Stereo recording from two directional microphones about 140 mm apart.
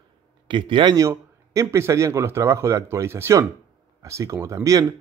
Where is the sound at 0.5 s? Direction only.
35° right (ahead or behind).